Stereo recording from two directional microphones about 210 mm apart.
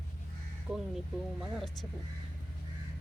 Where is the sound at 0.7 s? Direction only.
5° right (ahead or behind).